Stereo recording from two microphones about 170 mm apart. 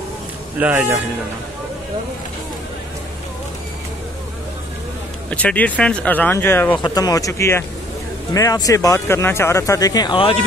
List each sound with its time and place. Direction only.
0.6 s a man's voice: 10° right (ahead or behind)
5.3 s speech: 10° left (ahead or behind); by 10.4 s 30° left (ahead or behind)